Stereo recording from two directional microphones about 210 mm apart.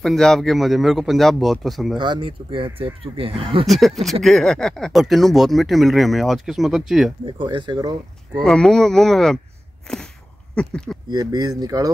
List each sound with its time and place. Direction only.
0.0 s speech: centre (ahead or behind)
2.0 s speech: 25° right (ahead or behind)
3.6 s speech: centre (ahead or behind)
7.2 s speech: 25° right (ahead or behind)
8.5 s speech: 5° left (ahead or behind)
9.9 s a sound: 5° left (ahead or behind)
10.5 s speech: 5° left (ahead or behind)
11.1 s speech: 20° right (ahead or behind)